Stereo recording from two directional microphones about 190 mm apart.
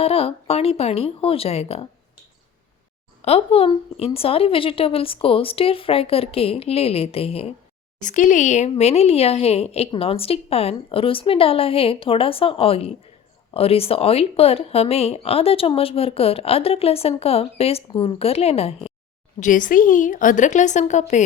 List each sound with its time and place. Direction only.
0.0 s speech: 30° left (ahead or behind)
3.2 s speech: 35° left (ahead or behind)
8.0 s speech: 40° left (ahead or behind)
19.4 s speech: 45° left (ahead or behind)